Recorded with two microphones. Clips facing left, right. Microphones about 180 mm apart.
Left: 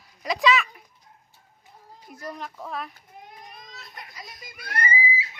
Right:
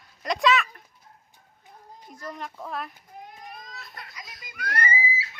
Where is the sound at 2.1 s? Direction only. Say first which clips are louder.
Left 1 dB; 10° left (ahead or behind).